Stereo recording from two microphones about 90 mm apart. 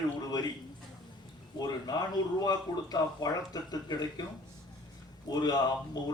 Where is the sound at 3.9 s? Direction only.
60° left (ahead or behind).